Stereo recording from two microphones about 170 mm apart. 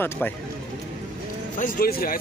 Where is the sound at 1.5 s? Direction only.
50° left (ahead or behind).